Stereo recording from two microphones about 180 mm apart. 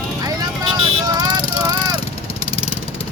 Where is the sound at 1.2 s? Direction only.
20° right (ahead or behind).